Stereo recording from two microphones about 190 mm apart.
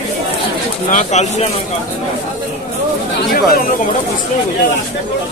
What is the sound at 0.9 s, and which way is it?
Speech, 40° left (ahead or behind).